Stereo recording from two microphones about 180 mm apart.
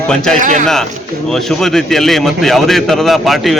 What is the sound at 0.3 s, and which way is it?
Speech, 45° right (ahead or behind).